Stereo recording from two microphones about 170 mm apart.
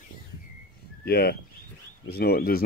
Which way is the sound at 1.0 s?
65° left (ahead or behind).